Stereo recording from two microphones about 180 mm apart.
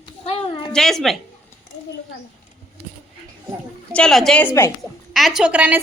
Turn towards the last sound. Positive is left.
turn(degrees=-10)  # may be behind; listen again after turning